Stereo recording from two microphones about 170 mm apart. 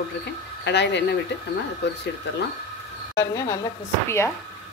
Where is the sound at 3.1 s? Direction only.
15° left (ahead or behind).